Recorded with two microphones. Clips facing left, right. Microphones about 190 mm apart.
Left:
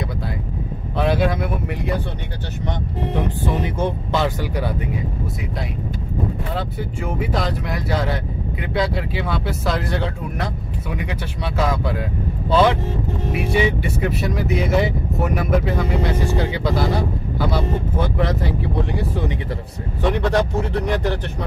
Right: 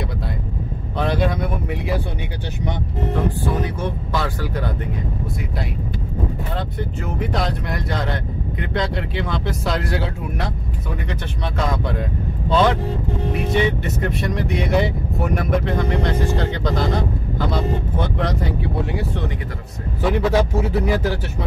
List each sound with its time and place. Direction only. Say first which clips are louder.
0.9 s speech: left 2 dB; 5° left (ahead or behind)
3.4 s speech: left 1 dB; 25° left (ahead or behind)
6.5 s a man's voice: even; 5° left (ahead or behind)
18.1 s speech: left 1 dB; 5° left (ahead or behind)
20.0 s speech: right 1 dB; 5° right (ahead or behind)